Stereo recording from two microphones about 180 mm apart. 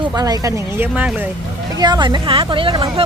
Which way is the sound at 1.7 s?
20° right (ahead or behind).